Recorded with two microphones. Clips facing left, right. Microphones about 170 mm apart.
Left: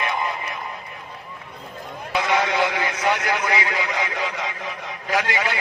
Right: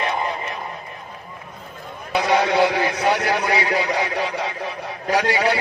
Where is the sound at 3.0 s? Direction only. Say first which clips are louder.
Even; 35° right (ahead or behind).